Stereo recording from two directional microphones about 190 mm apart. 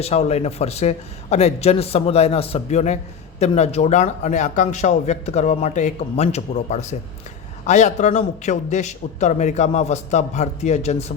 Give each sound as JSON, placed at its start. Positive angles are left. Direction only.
{"t": 0.0, "sound": "a man's voice", "side_deg": 35}